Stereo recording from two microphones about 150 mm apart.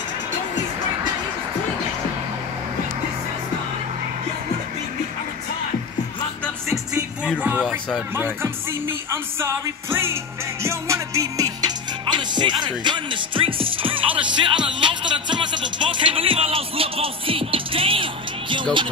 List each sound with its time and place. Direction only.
6.9 s music: 10° right (ahead or behind); by 18.9 s 35° right (ahead or behind)